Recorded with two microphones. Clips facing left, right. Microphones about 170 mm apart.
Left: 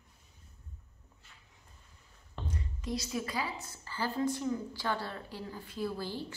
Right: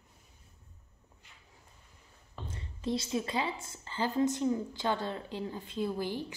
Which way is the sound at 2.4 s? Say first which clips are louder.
Right 3 dB; 25° right (ahead or behind).